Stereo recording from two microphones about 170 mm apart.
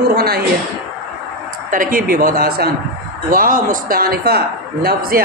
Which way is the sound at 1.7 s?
55° right (ahead or behind).